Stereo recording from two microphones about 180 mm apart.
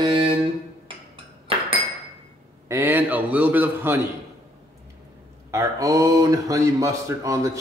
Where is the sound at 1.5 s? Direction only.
30° right (ahead or behind).